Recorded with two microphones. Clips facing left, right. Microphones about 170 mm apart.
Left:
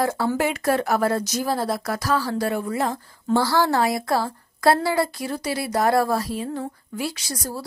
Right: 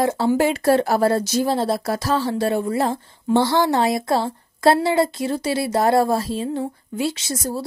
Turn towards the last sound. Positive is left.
turn(degrees=-25)  # may be behind; listen again after turning